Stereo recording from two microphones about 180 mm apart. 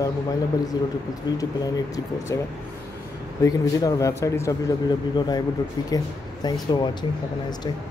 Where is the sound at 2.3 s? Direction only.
20° left (ahead or behind).